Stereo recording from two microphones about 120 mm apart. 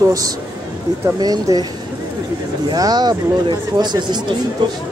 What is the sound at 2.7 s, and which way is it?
Speech, 35° right (ahead or behind).